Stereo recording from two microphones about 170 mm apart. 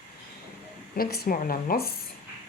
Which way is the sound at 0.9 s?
60° left (ahead or behind).